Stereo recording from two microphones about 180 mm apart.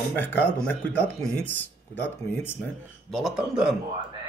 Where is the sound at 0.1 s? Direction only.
10° left (ahead or behind).